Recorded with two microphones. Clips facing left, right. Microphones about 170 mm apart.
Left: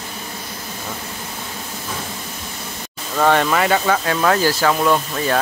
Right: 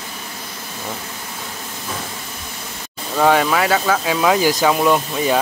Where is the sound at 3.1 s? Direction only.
5° right (ahead or behind).